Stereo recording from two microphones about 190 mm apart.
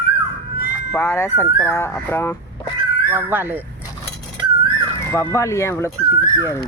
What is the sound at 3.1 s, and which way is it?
Speech, 10° right (ahead or behind).